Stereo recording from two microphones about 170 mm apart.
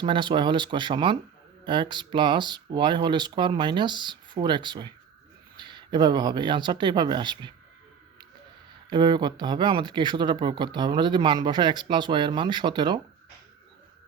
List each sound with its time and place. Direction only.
0.0 s speech: 30° right (ahead or behind)
8.9 s speech: 25° right (ahead or behind)